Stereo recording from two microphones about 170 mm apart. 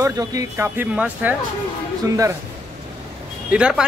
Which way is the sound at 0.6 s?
10° right (ahead or behind).